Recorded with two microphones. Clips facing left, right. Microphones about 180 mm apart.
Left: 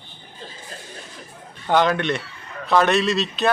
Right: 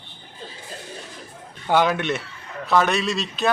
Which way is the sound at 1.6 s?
10° right (ahead or behind).